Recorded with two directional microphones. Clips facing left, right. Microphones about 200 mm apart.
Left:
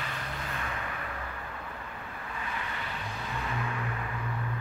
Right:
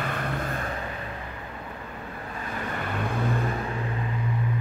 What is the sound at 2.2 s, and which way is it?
Vehicle, 40° right (ahead or behind).